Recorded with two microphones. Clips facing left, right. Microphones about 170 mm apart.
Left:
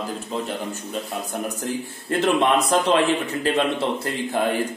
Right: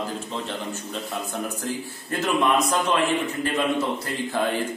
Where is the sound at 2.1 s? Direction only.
30° left (ahead or behind).